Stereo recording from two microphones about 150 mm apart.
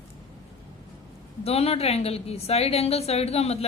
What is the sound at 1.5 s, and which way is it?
A woman's voice, 45° left (ahead or behind).